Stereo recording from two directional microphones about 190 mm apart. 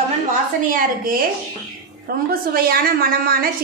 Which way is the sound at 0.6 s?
45° right (ahead or behind).